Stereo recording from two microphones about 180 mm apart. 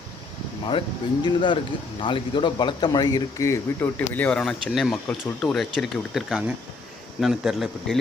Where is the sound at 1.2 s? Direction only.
25° left (ahead or behind).